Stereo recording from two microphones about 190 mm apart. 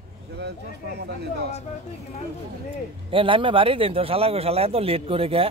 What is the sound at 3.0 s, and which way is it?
Speech, 25° right (ahead or behind).